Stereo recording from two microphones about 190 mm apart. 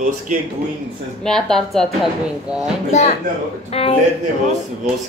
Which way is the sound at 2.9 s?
35° left (ahead or behind).